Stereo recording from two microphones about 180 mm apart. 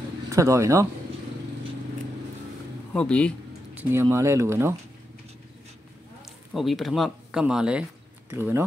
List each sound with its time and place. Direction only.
0.3 s speech: 15° right (ahead or behind)
2.9 s speech: 5° left (ahead or behind)
3.7 s speech: 15° right (ahead or behind)
6.5 s speech: centre (ahead or behind)